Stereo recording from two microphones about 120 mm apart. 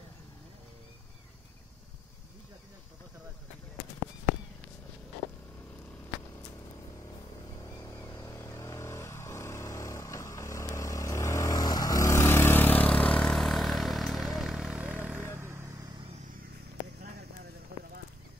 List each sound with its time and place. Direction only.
7.5 s vehicle: 30° left (ahead or behind); by 15.6 s 20° right (ahead or behind)